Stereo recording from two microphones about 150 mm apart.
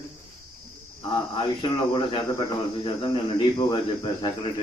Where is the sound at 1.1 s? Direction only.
35° left (ahead or behind).